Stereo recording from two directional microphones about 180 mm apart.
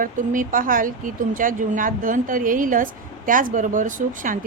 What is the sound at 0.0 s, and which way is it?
Speech, 50° right (ahead or behind).